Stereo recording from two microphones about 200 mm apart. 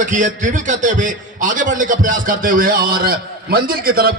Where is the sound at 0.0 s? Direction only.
40° right (ahead or behind).